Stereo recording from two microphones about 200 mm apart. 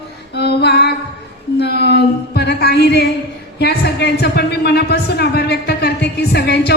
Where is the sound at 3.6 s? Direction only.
55° left (ahead or behind).